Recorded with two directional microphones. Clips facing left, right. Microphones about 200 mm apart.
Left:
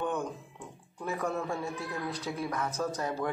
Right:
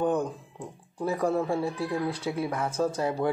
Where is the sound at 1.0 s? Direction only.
35° right (ahead or behind).